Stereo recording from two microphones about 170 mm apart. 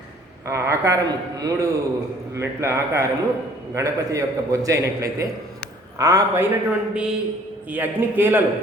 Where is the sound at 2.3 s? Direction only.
15° right (ahead or behind).